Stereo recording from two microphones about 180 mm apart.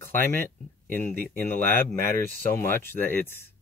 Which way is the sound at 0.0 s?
10° left (ahead or behind).